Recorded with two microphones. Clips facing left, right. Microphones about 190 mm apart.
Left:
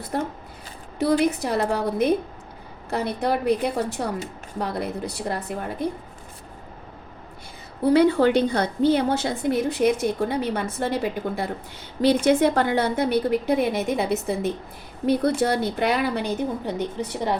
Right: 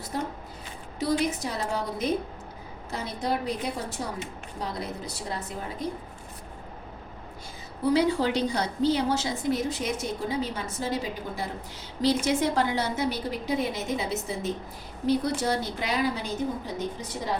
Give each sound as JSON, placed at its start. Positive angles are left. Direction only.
{"t": 0.1, "sound": "a woman's voice", "side_deg": 60}
{"t": 7.9, "sound": "a woman's voice", "side_deg": 60}